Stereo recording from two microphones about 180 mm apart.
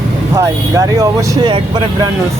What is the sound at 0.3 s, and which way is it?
Speech, 15° right (ahead or behind).